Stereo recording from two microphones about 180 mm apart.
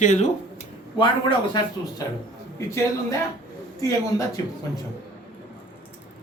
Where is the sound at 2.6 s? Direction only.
15° left (ahead or behind).